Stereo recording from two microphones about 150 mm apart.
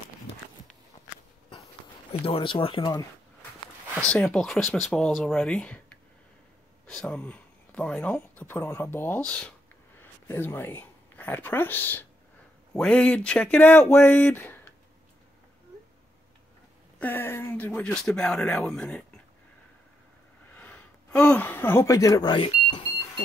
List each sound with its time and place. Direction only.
2.2 s speech: 35° left (ahead or behind)
4.1 s a woman's voice: 5° left (ahead or behind)
17.0 s speech: 15° left (ahead or behind)
20.5 s speech: 10° left (ahead or behind); by 22.8 s 30° left (ahead or behind)